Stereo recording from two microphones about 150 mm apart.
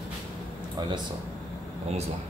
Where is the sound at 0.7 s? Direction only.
30° right (ahead or behind).